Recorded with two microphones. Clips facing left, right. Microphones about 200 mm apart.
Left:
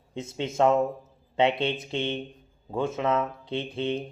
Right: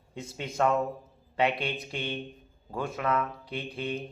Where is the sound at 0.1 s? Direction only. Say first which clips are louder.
Left 6 dB; 25° left (ahead or behind).